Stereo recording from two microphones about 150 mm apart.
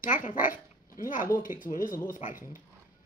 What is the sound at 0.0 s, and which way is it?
Speech, 60° left (ahead or behind).